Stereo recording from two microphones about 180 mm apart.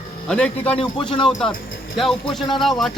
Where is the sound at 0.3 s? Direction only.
5° left (ahead or behind).